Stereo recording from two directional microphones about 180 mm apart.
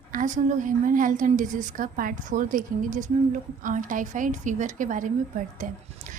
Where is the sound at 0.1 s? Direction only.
45° right (ahead or behind).